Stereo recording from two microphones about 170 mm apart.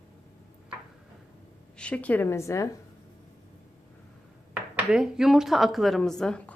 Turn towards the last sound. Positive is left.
turn(degrees=5)  # may be behind; listen again after turning